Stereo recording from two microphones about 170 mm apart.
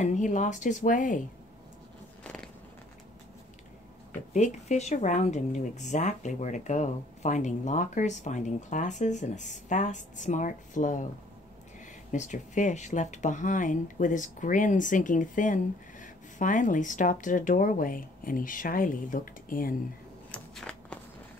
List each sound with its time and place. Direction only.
0.0 s speech: 45° left (ahead or behind)
2.2 s biting: 5° left (ahead or behind)
4.3 s speech: 40° left (ahead or behind)
12.1 s speech: 45° left (ahead or behind)
20.2 s a sound: 5° left (ahead or behind)